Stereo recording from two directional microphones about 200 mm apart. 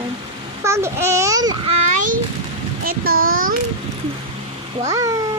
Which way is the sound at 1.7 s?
40° right (ahead or behind).